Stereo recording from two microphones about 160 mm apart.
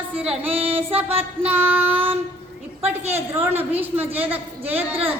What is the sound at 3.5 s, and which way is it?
A woman's voice, 10° right (ahead or behind).